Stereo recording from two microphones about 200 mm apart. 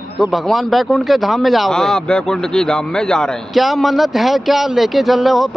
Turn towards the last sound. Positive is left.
turn(degrees=0)  # may be behind; listen again after turning